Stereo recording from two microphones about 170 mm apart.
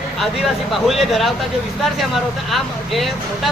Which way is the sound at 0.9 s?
Centre (ahead or behind).